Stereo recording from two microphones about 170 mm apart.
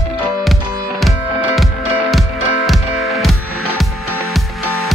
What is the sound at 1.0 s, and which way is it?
Music, centre (ahead or behind).